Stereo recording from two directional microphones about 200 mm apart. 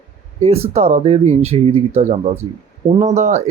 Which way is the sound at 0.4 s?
30° right (ahead or behind).